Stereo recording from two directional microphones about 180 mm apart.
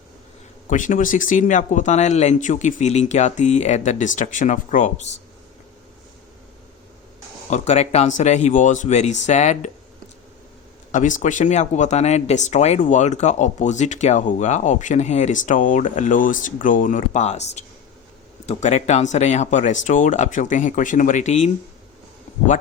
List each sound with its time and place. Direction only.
0.7 s speech: 45° left (ahead or behind)
7.5 s speech: 40° left (ahead or behind)
10.9 s speech: 45° left (ahead or behind)
22.3 s a sound: 40° left (ahead or behind)